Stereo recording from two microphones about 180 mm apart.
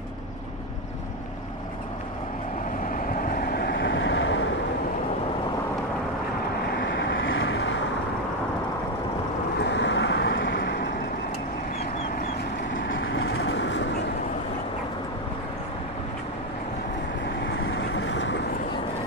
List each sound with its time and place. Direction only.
3.3 s vehicle: 60° left (ahead or behind); by 4.5 s 90° left
6.8 s vehicle: 70° left (ahead or behind); by 7.7 s 90° left
9.6 s vehicle: 80° left
12.9 s vehicle: 90° left; by 13.8 s 75° left (ahead or behind)
17.6 s vehicle: 90° left